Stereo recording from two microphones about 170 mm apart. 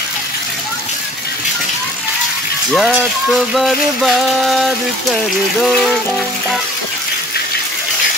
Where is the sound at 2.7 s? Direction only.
Centre (ahead or behind).